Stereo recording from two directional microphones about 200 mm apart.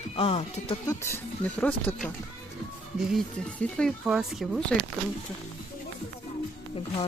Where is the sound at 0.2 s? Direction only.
30° left (ahead or behind).